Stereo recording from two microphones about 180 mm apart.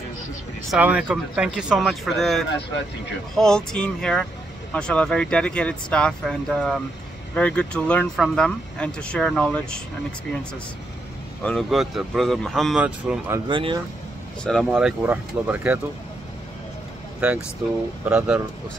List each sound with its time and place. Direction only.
0.7 s speech: 5° right (ahead or behind)
11.4 s speech: centre (ahead or behind)
13.5 s speech: 30° right (ahead or behind)
14.4 s speech: 5° left (ahead or behind)
14.7 s speech: 10° right (ahead or behind)
18.1 s speech: 5° right (ahead or behind)